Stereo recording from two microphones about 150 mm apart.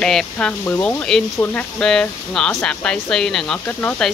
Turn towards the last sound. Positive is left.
turn(degrees=10)  # may be behind; listen again after turning